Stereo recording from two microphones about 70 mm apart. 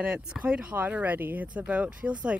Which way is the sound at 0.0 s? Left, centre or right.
Centre.